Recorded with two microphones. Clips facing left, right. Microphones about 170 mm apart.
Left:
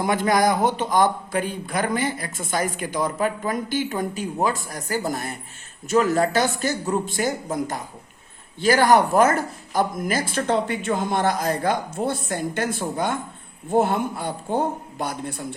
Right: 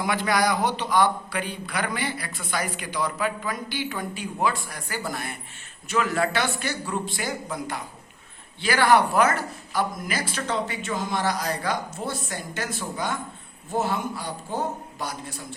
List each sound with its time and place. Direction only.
0.0 s a man's voice: 45° left (ahead or behind)